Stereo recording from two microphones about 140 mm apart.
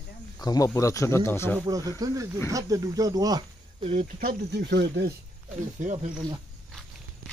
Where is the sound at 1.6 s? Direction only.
25° right (ahead or behind).